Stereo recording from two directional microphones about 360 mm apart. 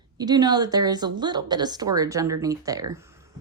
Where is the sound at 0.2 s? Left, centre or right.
Centre.